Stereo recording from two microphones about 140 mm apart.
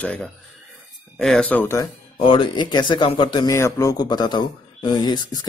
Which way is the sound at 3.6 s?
20° left (ahead or behind).